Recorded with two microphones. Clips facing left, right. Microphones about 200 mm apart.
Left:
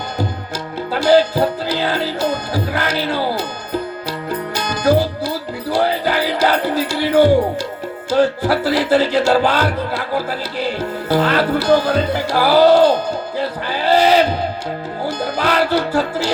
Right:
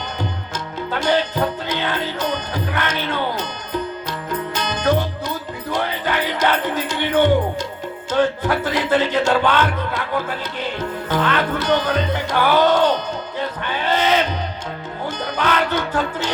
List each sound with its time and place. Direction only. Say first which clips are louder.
0.9 s speech: left 7 dB; 35° left (ahead or behind)
4.5 s music: left 5 dB; 35° left (ahead or behind)
8.1 s speech: left 3 dB; 35° left (ahead or behind)
13.4 s music: left 2 dB; 35° left (ahead or behind)